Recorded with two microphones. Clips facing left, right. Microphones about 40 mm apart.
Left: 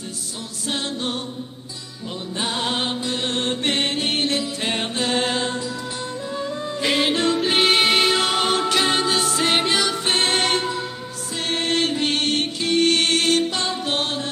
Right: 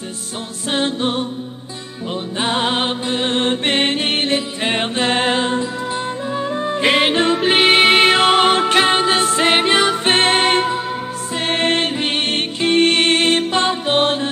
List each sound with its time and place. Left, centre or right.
0.7 s music: right
2.3 s music: right